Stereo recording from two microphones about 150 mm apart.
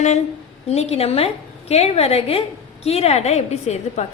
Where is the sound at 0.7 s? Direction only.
45° left (ahead or behind).